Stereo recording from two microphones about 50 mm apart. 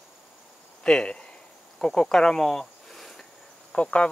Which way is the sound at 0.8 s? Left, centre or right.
Centre.